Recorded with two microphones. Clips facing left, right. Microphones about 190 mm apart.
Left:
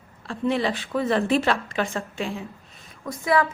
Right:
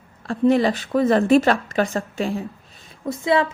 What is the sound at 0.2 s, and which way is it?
A woman's voice, 45° right (ahead or behind).